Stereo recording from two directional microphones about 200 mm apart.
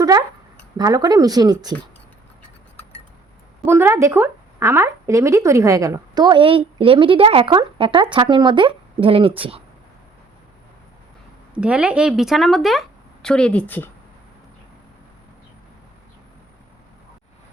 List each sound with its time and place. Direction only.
0.0 s speech: 20° right (ahead or behind)
3.7 s speech: 10° right (ahead or behind); by 9.3 s 25° right (ahead or behind)
11.5 s a woman's voice: 5° right (ahead or behind)